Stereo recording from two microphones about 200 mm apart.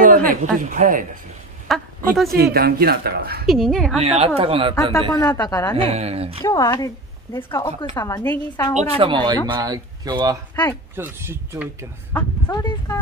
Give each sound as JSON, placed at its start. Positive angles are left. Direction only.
{"t": 0.0, "sound": "a woman's voice", "side_deg": -45}
{"t": 1.7, "sound": "a woman's voice", "side_deg": 0}
{"t": 2.2, "sound": "speech", "side_deg": -50}
{"t": 3.4, "sound": "a woman's voice", "side_deg": 0}
{"t": 4.0, "sound": "speech", "side_deg": -30}
{"t": 5.1, "sound": "a woman's voice", "side_deg": 15}
{"t": 5.8, "sound": "speech", "side_deg": -30}
{"t": 6.4, "sound": "a woman's voice", "side_deg": 20}
{"t": 8.7, "sound": "speech", "side_deg": -30}
{"t": 10.5, "sound": "speech", "side_deg": 15}
{"t": 11.0, "sound": "speech", "side_deg": -10}
{"t": 12.4, "sound": "speech", "side_deg": 20}